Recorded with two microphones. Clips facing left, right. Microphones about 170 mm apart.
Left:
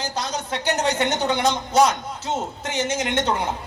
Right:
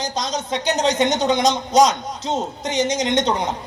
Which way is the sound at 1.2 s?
15° right (ahead or behind).